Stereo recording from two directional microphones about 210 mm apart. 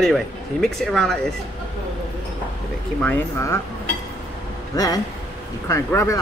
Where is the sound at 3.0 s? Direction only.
10° left (ahead or behind).